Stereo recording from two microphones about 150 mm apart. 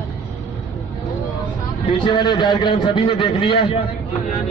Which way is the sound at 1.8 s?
35° left (ahead or behind).